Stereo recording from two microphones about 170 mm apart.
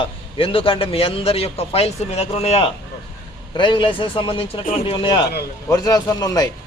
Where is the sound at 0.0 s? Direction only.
30° left (ahead or behind).